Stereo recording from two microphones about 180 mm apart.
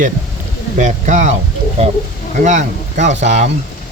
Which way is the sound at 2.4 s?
40° right (ahead or behind).